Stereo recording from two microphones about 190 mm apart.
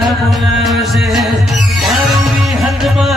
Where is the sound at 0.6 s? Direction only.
Centre (ahead or behind).